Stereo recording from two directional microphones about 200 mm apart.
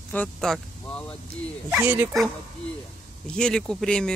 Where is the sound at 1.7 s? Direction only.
10° right (ahead or behind).